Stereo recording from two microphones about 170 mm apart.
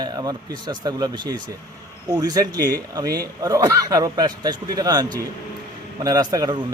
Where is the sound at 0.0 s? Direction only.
25° right (ahead or behind).